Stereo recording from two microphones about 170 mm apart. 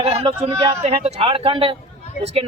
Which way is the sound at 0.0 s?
35° right (ahead or behind).